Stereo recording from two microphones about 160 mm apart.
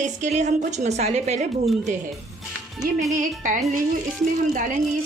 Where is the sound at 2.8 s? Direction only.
65° right (ahead or behind).